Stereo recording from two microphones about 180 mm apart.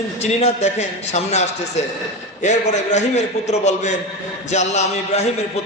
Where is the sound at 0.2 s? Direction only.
35° left (ahead or behind).